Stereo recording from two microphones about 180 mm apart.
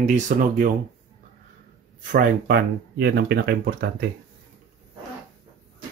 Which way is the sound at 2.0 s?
50° right (ahead or behind).